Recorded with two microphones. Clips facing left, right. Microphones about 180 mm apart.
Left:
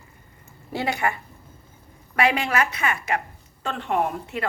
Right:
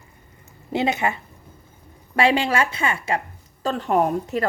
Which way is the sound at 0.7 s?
20° right (ahead or behind).